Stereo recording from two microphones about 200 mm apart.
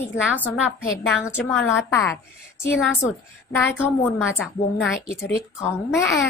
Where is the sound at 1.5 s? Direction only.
5° left (ahead or behind).